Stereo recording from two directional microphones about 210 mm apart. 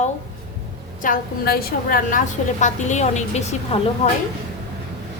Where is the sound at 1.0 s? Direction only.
45° left (ahead or behind).